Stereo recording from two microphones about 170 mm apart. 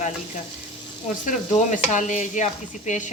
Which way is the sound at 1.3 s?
45° left (ahead or behind).